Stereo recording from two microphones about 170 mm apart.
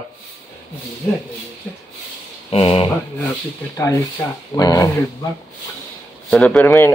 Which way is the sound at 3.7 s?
15° left (ahead or behind).